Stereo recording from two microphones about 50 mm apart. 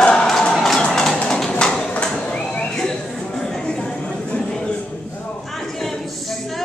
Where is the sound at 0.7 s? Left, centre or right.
Centre.